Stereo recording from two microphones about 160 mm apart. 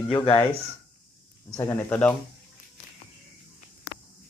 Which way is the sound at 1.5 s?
20° left (ahead or behind).